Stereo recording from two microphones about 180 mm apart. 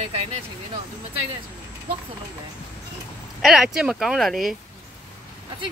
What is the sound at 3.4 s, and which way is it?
Speech, centre (ahead or behind).